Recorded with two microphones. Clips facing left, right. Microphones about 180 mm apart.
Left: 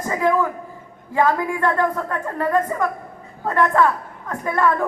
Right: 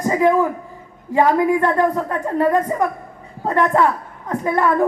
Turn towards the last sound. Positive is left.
turn(degrees=-20)  # may be behind; listen again after turning